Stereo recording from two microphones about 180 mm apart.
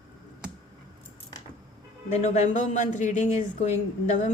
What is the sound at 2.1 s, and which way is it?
Speech, 40° left (ahead or behind).